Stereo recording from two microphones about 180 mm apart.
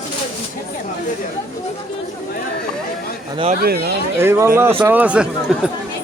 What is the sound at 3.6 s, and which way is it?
Speech, 60° right (ahead or behind).